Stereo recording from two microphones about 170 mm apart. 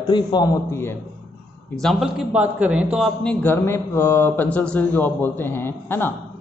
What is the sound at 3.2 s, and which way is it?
Speech, 10° left (ahead or behind).